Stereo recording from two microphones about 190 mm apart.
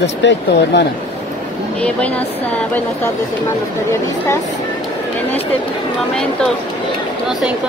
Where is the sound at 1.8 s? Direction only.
5° left (ahead or behind).